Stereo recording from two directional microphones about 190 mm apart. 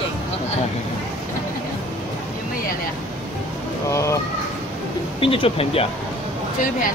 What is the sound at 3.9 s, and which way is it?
Crow, 15° left (ahead or behind).